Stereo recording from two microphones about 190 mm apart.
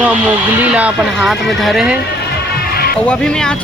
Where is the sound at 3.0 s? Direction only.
5° left (ahead or behind).